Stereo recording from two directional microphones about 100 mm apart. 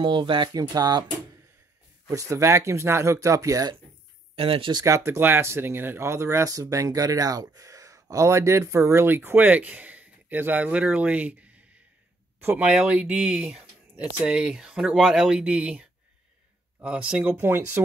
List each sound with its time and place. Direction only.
0.0 s speech: 50° right (ahead or behind)
2.0 s speech: 30° right (ahead or behind)
4.4 s speech: 65° right (ahead or behind)
4.7 s speech: 30° right (ahead or behind); by 17.4 s 10° right (ahead or behind)
17.4 s speech: 20° right (ahead or behind)